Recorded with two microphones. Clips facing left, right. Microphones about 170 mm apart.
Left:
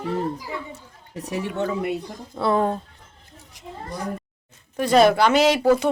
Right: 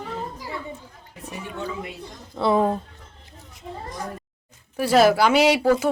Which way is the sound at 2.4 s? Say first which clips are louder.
Right 1 dB; 5° right (ahead or behind).